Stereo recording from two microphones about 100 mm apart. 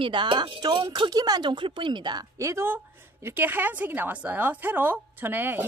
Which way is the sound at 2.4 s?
30° right (ahead or behind).